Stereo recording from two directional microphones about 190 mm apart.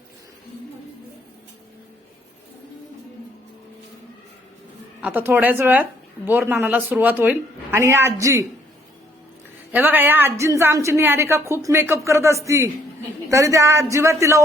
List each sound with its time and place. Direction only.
4.9 s a woman's voice: 10° right (ahead or behind)
9.7 s a woman's voice: 10° right (ahead or behind)